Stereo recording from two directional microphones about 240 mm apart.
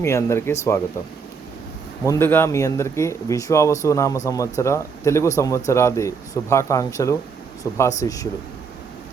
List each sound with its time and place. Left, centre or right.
0.0 s speech: centre
2.0 s speech: centre